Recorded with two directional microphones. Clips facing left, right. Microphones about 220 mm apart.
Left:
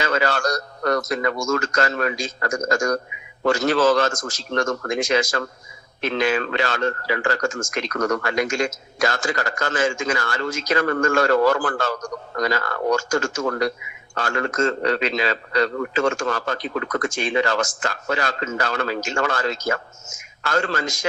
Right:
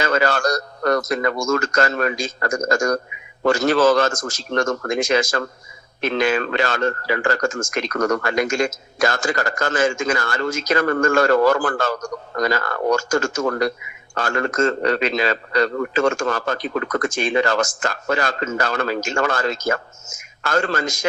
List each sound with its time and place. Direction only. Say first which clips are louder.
0.0 s a man's voice: right 3 dB; 50° right (ahead or behind)